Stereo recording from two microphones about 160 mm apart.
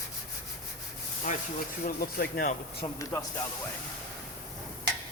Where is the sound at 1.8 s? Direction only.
65° left (ahead or behind).